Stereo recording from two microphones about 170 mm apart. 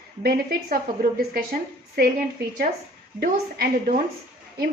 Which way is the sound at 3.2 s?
55° right (ahead or behind).